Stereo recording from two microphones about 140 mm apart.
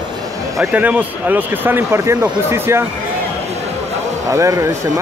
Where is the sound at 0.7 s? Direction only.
10° right (ahead or behind).